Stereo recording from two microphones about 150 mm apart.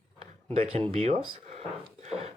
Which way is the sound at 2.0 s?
45° right (ahead or behind).